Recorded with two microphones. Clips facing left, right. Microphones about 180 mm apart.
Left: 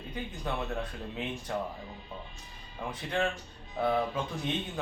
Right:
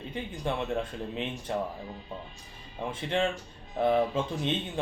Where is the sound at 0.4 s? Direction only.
25° right (ahead or behind).